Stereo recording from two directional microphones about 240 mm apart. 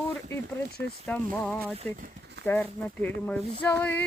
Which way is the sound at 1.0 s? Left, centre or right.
Centre.